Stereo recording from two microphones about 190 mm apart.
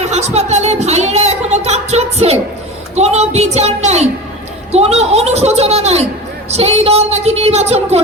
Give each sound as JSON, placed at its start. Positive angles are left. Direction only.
{"t": 0.0, "sound": "a woman's voice", "side_deg": -35}